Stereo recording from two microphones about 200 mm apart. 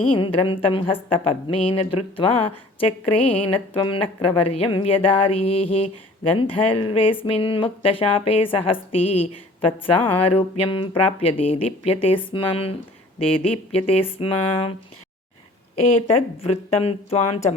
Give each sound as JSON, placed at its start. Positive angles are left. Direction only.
{"t": 0.0, "sound": "speech", "side_deg": 25}
{"t": 16.0, "sound": "a woman's voice", "side_deg": 30}